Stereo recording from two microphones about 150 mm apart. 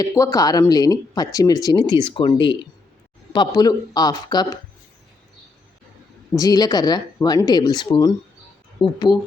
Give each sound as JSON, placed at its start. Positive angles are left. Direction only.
{"t": 0.0, "sound": "speech", "side_deg": 20}
{"t": 6.3, "sound": "speech", "side_deg": 25}